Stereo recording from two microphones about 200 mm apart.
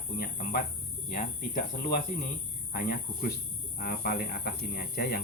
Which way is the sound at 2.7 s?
45° left (ahead or behind).